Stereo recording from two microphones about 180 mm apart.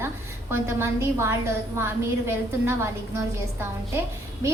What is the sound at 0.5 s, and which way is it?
A woman's voice, 15° right (ahead or behind).